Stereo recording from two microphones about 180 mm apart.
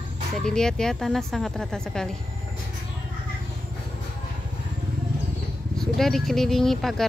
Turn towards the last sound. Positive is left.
turn(degrees=0)  # may be behind; listen again after turning